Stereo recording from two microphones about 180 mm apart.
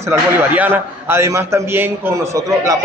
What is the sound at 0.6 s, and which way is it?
A man's voice, 15° right (ahead or behind).